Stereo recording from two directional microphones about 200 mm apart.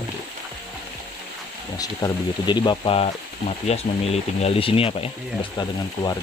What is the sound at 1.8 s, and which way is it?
Speech, 20° left (ahead or behind).